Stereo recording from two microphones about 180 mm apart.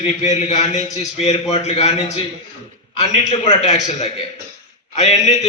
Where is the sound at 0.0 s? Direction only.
40° left (ahead or behind).